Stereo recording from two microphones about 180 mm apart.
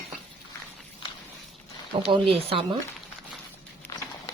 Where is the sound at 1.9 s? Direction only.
30° right (ahead or behind).